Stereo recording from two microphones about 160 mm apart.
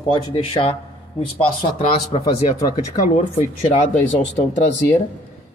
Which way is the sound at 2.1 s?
40° left (ahead or behind).